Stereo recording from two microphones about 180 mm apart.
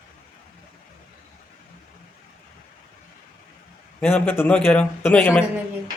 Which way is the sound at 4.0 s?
10° left (ahead or behind).